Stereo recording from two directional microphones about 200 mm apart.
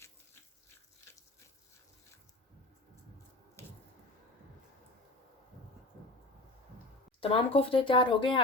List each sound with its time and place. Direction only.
7.2 s speech: 25° left (ahead or behind)